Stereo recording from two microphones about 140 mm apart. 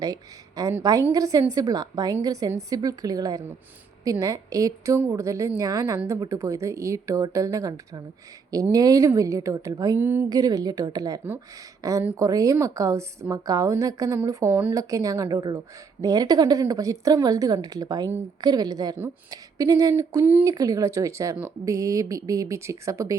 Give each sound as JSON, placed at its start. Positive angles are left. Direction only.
{"t": 0.0, "sound": "a woman's voice", "side_deg": -25}
{"t": 10.2, "sound": "a woman's voice", "side_deg": -25}